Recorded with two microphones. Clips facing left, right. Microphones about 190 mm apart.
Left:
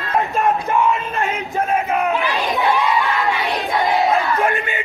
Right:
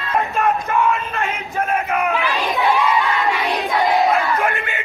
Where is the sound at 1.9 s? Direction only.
20° left (ahead or behind).